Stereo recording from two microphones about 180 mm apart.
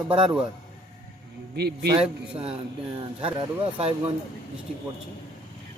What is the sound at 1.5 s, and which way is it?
Speech, 65° right (ahead or behind).